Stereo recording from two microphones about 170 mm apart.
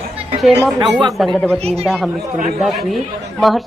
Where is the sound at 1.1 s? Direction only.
Centre (ahead or behind).